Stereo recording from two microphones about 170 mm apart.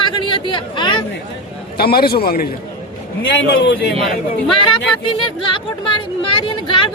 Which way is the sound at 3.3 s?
90° left.